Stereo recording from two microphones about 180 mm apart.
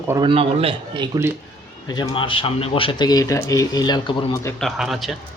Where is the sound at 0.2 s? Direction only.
30° right (ahead or behind).